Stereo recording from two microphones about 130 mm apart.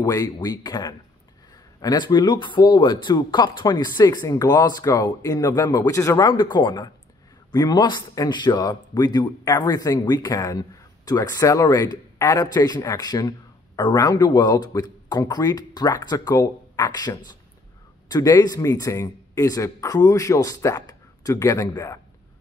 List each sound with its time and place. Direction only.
0.0 s speech: 25° left (ahead or behind)
6.2 s speech: 35° left (ahead or behind)